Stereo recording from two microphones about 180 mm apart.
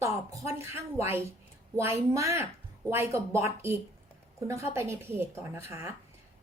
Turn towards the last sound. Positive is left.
turn(degrees=-15)  # may be behind; listen again after turning